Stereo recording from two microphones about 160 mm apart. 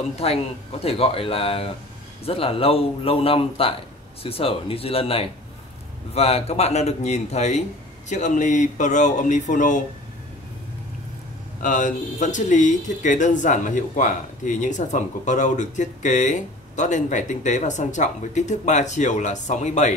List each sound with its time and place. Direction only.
0.2 s speech: 40° left (ahead or behind)
11.6 s speech: 55° left (ahead or behind)